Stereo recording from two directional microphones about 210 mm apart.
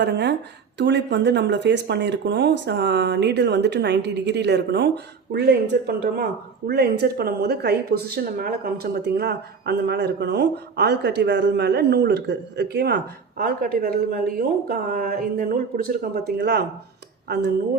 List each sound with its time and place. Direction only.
0.0 s speech: 55° right (ahead or behind)